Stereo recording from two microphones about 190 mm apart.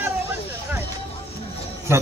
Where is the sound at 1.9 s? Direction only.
15° right (ahead or behind).